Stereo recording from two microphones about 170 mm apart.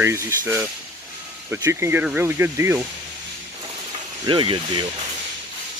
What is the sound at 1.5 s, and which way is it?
Speech, 15° right (ahead or behind).